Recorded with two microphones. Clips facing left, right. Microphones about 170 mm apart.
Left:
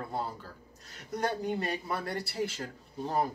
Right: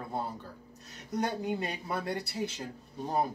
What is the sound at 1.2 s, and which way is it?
Speech, 20° right (ahead or behind).